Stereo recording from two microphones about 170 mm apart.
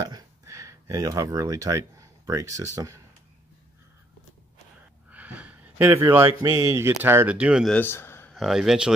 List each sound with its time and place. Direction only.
0.0 s speech: 20° right (ahead or behind)
5.1 s a sound: 10° right (ahead or behind)
6.4 s speech: 20° right (ahead or behind); by 7.7 s 5° right (ahead or behind)
7.7 s a man's voice: 10° left (ahead or behind)
8.4 s a man's voice: centre (ahead or behind)